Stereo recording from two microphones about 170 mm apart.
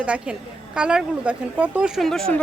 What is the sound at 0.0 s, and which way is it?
A woman's voice, 5° right (ahead or behind).